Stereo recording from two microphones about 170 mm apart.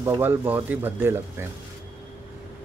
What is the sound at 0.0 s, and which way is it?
Speech, 15° right (ahead or behind).